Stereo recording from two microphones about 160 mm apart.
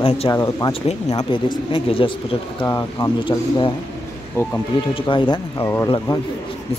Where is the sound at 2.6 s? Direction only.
20° left (ahead or behind).